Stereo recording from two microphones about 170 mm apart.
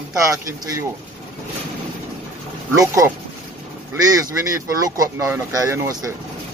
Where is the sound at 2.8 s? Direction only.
20° right (ahead or behind).